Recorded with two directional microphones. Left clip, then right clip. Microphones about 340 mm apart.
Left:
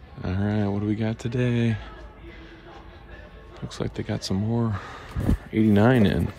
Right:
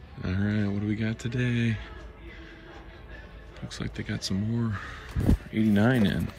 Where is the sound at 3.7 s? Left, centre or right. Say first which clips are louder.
Left 6 dB; centre.